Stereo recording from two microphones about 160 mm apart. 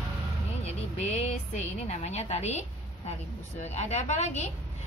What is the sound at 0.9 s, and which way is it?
A woman's voice, 40° left (ahead or behind).